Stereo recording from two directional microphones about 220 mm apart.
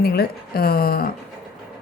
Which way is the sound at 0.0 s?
45° left (ahead or behind).